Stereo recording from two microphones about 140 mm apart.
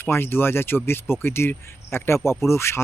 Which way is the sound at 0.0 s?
15° left (ahead or behind).